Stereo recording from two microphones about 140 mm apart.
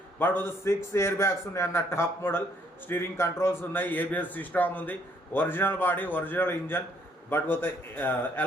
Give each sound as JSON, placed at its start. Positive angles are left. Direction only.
{"t": 0.2, "sound": "a man's voice", "side_deg": 15}